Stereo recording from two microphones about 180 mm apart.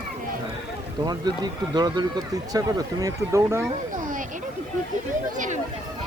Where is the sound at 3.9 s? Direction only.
45° right (ahead or behind).